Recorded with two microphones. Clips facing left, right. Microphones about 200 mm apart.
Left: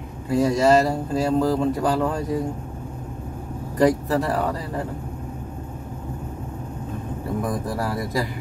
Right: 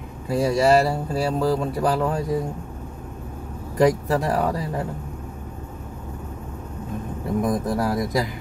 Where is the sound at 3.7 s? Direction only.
10° right (ahead or behind).